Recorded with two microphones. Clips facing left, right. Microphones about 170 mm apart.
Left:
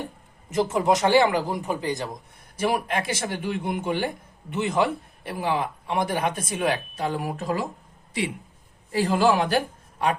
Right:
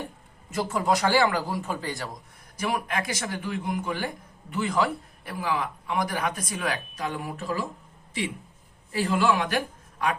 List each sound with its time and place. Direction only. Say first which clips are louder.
0.5 s a man's voice: left 4 dB; 20° left (ahead or behind)
2.6 s a man's voice: left 4 dB; 30° left (ahead or behind)
8.9 s a woman's voice: left 3 dB; 35° left (ahead or behind)